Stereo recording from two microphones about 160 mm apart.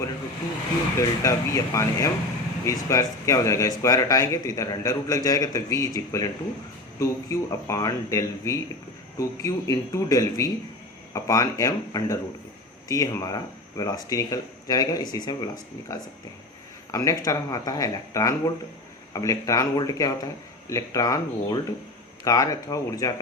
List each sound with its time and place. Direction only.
0.9 s speech: 20° left (ahead or behind)
16.9 s speech: 20° left (ahead or behind)